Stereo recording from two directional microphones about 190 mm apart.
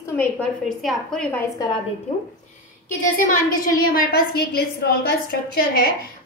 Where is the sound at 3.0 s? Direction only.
45° left (ahead or behind).